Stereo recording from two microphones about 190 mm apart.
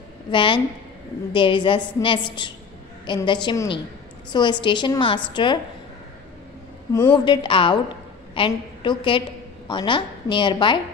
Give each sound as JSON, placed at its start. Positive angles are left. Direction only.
{"t": 0.3, "sound": "a woman's voice", "side_deg": 25}
{"t": 6.9, "sound": "a woman's voice", "side_deg": 15}